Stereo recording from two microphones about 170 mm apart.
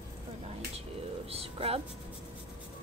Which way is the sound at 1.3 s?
35° right (ahead or behind).